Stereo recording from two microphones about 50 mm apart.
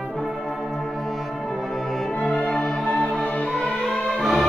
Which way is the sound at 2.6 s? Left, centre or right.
Centre.